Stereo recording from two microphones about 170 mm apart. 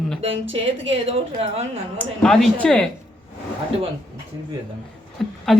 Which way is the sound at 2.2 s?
5° left (ahead or behind).